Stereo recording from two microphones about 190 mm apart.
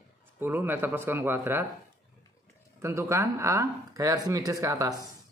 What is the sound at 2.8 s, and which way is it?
Speech, 15° right (ahead or behind).